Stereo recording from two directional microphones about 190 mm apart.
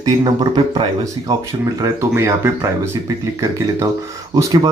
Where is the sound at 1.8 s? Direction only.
15° right (ahead or behind).